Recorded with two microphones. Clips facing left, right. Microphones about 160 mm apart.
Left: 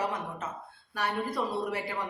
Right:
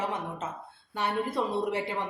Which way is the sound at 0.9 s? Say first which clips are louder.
Right 2 dB; 25° right (ahead or behind).